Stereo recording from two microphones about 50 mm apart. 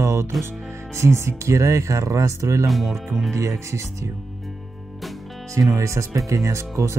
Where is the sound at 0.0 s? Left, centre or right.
Right.